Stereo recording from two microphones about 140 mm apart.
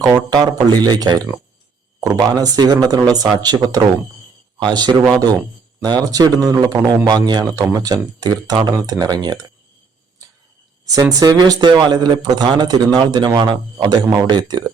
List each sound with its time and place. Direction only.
0.3 s speech: 30° right (ahead or behind)
10.9 s speech: 25° right (ahead or behind)